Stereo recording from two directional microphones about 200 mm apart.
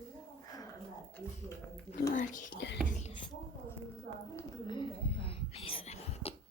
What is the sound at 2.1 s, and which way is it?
Whispering, 40° left (ahead or behind).